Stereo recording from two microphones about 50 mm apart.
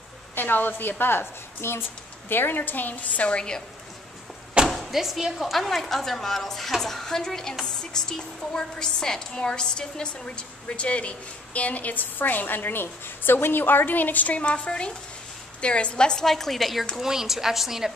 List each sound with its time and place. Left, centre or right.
0.4 s a woman's voice: left; by 3.6 s centre
4.6 s a woman's voice: centre; by 14.4 s left
14.4 s a woman's voice: left; by 16.8 s centre
16.9 s a woman's voice: centre